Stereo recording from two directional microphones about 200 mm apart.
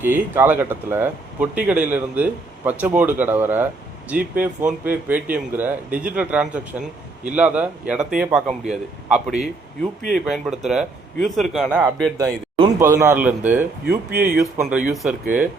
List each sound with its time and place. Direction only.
0.0 s a man's voice: 10° right (ahead or behind)
14.1 s speech: 45° right (ahead or behind)
14.6 s speech: 5° right (ahead or behind)